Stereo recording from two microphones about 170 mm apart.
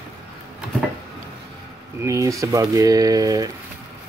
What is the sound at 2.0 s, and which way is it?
Speech, 20° right (ahead or behind).